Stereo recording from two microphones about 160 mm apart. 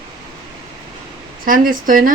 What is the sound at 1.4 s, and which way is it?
Speech, 60° right (ahead or behind).